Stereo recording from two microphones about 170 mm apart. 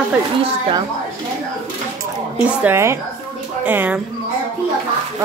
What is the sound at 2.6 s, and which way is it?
Speech, 15° right (ahead or behind).